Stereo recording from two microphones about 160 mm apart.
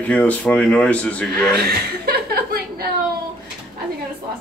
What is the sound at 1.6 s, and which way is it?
Chuckle, 80° right.